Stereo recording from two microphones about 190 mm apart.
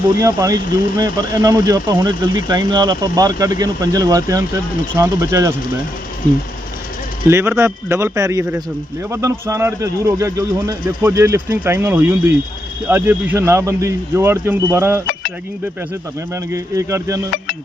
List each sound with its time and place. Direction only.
0.2 s speech: 15° right (ahead or behind)
7.3 s speech: 15° right (ahead or behind)
16.3 s speech: 15° right (ahead or behind)